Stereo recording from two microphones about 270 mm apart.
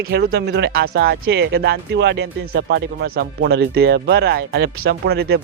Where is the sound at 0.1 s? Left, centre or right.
Right.